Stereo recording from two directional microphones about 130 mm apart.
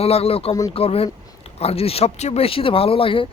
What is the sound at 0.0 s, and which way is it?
Speech, 50° left (ahead or behind).